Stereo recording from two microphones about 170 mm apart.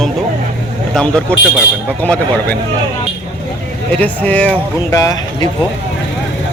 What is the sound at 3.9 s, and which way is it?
Speech, 10° left (ahead or behind).